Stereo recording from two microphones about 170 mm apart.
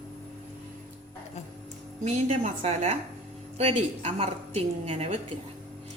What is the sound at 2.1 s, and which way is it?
A woman's voice, 40° right (ahead or behind).